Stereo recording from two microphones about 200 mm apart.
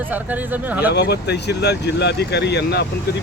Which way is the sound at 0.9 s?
55° left (ahead or behind).